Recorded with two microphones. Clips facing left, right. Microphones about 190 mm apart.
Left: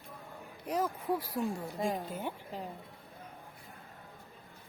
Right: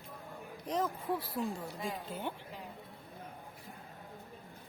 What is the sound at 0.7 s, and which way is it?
Speech, 10° left (ahead or behind).